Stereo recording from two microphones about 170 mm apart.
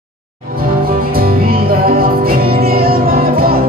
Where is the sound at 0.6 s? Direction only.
60° right (ahead or behind).